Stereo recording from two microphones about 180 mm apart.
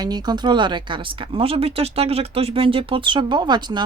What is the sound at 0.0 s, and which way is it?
Speech, 20° right (ahead or behind).